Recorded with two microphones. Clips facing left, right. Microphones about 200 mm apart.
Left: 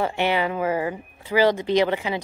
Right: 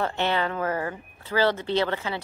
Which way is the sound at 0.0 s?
10° left (ahead or behind).